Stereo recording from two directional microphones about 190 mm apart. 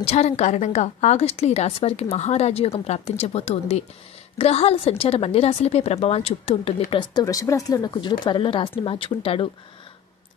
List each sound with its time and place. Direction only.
0.0 s a woman's voice: 35° left (ahead or behind)